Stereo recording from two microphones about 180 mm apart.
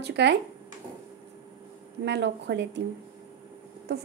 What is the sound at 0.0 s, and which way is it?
Speech, 70° right (ahead or behind).